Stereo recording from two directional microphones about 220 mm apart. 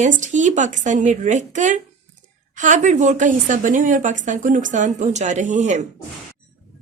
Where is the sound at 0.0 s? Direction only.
35° right (ahead or behind).